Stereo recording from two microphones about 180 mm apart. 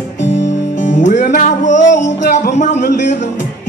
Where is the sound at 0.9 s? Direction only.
40° left (ahead or behind).